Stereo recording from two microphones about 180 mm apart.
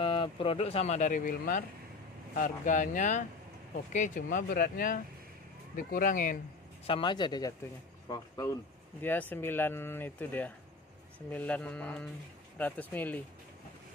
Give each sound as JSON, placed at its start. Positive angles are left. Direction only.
{"t": 0.0, "sound": "speech", "side_deg": 30}
{"t": 6.9, "sound": "speech", "side_deg": 25}
{"t": 9.3, "sound": "speech", "side_deg": 10}